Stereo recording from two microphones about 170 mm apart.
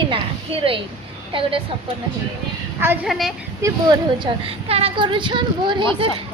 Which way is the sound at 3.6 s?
25° right (ahead or behind).